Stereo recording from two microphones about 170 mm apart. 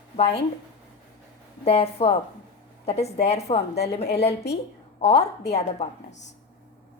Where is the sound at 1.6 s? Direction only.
35° left (ahead or behind).